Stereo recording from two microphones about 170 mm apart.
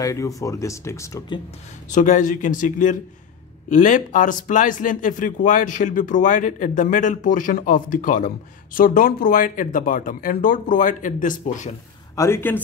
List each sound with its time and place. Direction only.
0.0 s speech: 20° left (ahead or behind)
1.9 s speech: 50° left (ahead or behind)
12.2 s speech: 15° left (ahead or behind)